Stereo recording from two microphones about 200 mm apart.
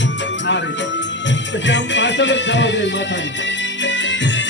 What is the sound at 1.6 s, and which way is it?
Music, 65° left (ahead or behind).